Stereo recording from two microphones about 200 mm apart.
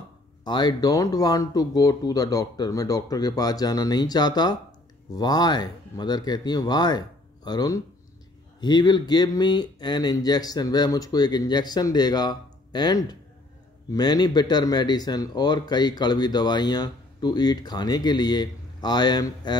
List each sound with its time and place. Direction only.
0.4 s speech: 20° left (ahead or behind)